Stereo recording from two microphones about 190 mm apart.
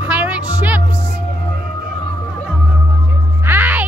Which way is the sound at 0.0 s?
5° right (ahead or behind).